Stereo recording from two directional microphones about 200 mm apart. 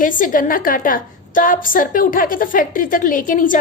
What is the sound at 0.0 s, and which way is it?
A woman's voice, 40° left (ahead or behind).